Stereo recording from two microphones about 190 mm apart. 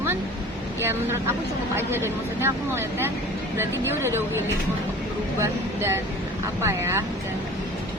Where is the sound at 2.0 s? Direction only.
10° right (ahead or behind).